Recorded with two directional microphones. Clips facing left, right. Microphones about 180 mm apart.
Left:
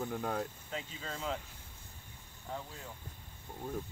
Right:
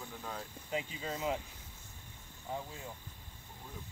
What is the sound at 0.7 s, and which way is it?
Speech, 10° right (ahead or behind).